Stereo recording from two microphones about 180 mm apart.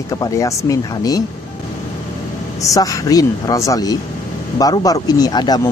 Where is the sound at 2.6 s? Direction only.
20° left (ahead or behind).